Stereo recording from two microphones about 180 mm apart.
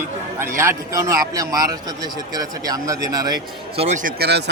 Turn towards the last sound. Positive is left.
turn(degrees=-70)  # may be behind; listen again after turning